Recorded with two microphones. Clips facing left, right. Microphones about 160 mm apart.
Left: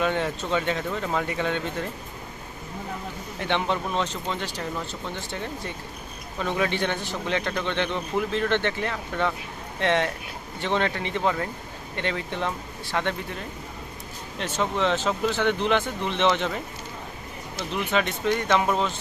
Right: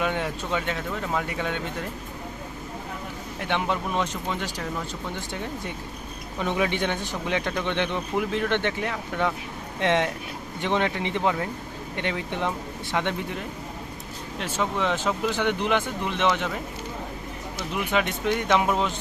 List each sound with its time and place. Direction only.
0.0 s speech: 10° right (ahead or behind)
3.4 s speech: 10° right (ahead or behind)
14.3 s speech: 10° right (ahead or behind)
17.7 s speech: 10° right (ahead or behind)